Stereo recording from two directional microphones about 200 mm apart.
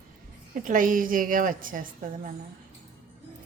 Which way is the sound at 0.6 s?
40° right (ahead or behind).